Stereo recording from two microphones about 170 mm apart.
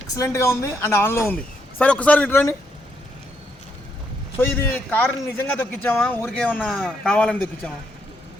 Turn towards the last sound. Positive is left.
turn(degrees=10)  # may be behind; listen again after turning